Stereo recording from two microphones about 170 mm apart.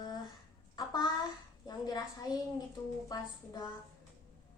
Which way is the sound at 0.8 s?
25° left (ahead or behind).